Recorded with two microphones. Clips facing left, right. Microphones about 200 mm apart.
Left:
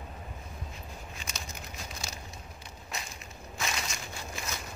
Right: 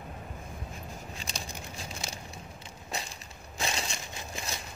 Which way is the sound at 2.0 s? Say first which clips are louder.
Right 2 dB; 20° right (ahead or behind).